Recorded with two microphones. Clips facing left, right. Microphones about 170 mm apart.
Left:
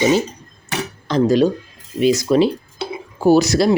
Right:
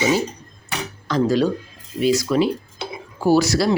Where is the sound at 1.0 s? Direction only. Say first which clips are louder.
Left 4 dB; 20° left (ahead or behind).